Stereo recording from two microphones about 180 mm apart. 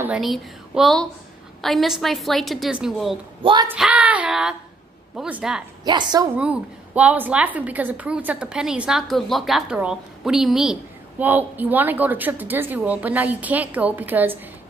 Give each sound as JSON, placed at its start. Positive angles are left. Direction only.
{"t": 0.0, "sound": "a woman's voice", "side_deg": -5}
{"t": 5.9, "sound": "a woman's voice", "side_deg": -25}
{"t": 6.3, "sound": "a woman's voice", "side_deg": -5}